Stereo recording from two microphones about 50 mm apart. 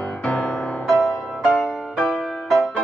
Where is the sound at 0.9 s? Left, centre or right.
Centre.